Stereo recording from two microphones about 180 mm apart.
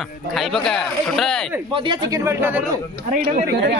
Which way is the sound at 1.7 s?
25° right (ahead or behind).